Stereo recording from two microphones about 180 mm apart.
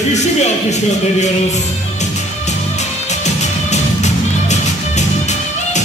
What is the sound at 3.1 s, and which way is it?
Music, 40° left (ahead or behind).